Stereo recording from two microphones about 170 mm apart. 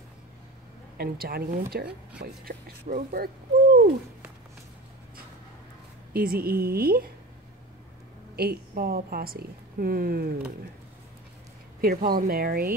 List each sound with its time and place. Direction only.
0.9 s a woman's voice: 65° right (ahead or behind)
2.2 s speech: 55° right (ahead or behind)
3.1 s a sound: 60° right (ahead or behind)
6.1 s a woman's voice: 60° right (ahead or behind)
8.4 s a woman's voice: 65° right (ahead or behind)
11.8 s a woman's voice: 60° right (ahead or behind)